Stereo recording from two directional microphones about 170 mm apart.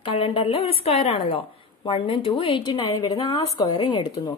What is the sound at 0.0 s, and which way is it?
A woman's voice, 30° left (ahead or behind).